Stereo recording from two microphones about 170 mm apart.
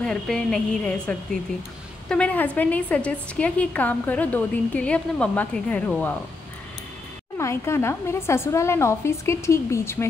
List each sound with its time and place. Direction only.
0.0 s a woman's voice: 5° left (ahead or behind)
7.3 s a woman's voice: 15° left (ahead or behind)